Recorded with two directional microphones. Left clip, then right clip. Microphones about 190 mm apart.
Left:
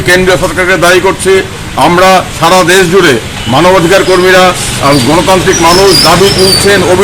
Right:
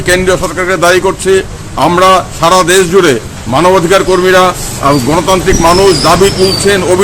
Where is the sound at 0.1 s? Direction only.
30° right (ahead or behind).